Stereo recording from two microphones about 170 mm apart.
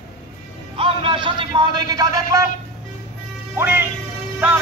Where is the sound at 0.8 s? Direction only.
30° right (ahead or behind).